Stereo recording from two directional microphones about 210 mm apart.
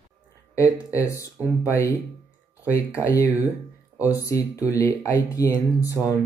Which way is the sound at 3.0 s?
15° left (ahead or behind).